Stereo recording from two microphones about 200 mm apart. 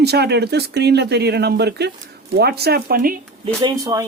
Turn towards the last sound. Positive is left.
turn(degrees=-20)  # may be behind; listen again after turning